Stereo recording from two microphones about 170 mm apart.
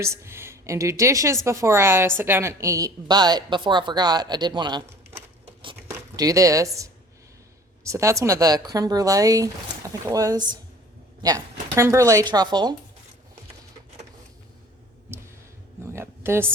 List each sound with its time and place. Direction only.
0.0 s a woman's voice: 15° right (ahead or behind)
5.9 s a woman's voice: 20° right (ahead or behind)
15.8 s a sound: 15° right (ahead or behind)